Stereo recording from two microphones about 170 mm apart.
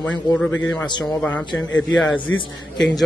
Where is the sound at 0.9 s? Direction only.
25° left (ahead or behind).